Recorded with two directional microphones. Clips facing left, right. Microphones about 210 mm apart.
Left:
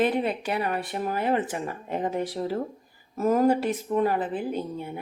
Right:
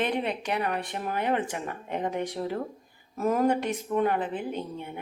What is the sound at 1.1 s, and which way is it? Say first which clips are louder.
Speech: left 2 dB; 35° left (ahead or behind).